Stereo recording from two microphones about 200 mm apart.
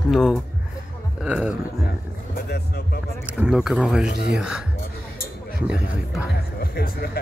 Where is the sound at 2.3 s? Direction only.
50° left (ahead or behind).